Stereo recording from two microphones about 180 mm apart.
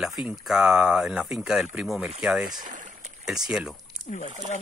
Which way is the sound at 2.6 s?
45° right (ahead or behind).